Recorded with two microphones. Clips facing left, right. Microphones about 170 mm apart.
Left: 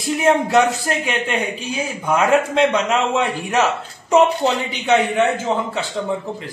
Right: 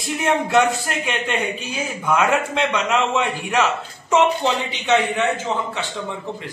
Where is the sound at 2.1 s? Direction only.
35° left (ahead or behind).